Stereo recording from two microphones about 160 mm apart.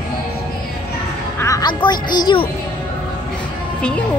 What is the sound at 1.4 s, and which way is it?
A woman's voice, 25° left (ahead or behind).